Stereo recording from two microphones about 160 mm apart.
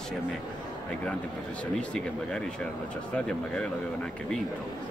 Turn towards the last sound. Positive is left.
turn(degrees=5)  # may be behind; listen again after turning